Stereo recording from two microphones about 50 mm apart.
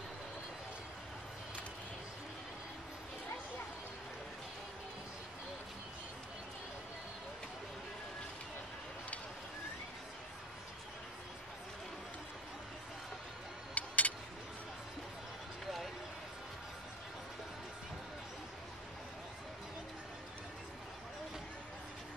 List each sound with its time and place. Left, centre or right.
13.7 s vehicle: left